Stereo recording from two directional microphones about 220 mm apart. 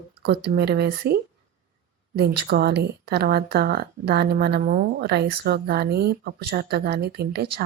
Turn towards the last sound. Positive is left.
turn(degrees=-45)  # may be behind; listen again after turning